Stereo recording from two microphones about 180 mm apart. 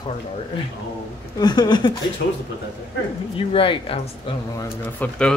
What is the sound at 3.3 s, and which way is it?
Speech, 30° left (ahead or behind).